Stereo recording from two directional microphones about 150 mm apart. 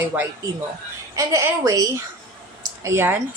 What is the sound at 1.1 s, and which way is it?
A woman's voice, 20° right (ahead or behind).